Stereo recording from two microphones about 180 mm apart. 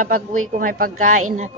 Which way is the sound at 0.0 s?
50° right (ahead or behind).